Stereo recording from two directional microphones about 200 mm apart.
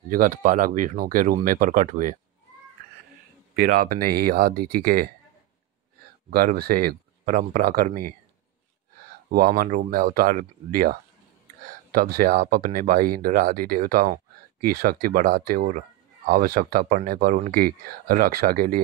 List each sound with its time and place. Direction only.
0.1 s speech: 45° right (ahead or behind)
3.5 s speech: 45° right (ahead or behind)
6.3 s speech: 50° right (ahead or behind)
9.3 s speech: 45° right (ahead or behind)